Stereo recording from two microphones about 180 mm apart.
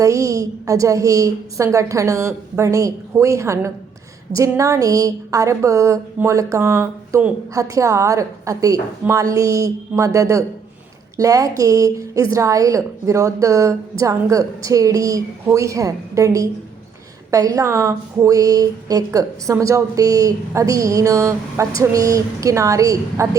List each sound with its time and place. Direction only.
0.0 s a woman's voice: 15° right (ahead or behind)